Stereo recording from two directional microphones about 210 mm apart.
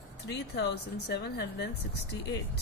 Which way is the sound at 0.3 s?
55° left (ahead or behind).